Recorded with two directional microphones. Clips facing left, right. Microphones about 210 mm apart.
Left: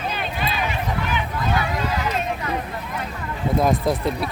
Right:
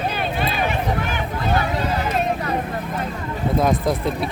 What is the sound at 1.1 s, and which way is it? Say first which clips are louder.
Vehicle: right 2 dB; 40° right (ahead or behind).